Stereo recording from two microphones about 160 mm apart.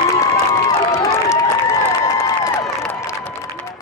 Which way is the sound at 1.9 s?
20° left (ahead or behind).